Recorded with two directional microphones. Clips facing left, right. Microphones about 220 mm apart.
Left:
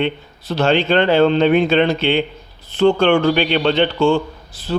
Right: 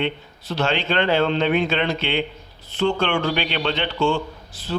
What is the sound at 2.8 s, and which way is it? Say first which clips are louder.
A man's voice: left 8 dB; 50° left (ahead or behind).